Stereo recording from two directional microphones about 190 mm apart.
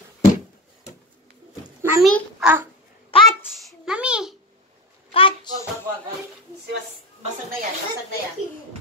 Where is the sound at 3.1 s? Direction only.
30° left (ahead or behind).